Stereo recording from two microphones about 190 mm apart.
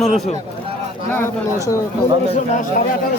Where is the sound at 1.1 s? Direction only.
15° left (ahead or behind).